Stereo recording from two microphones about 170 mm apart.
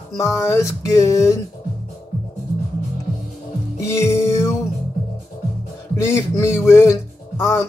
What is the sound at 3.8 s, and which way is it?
Music, 15° left (ahead or behind).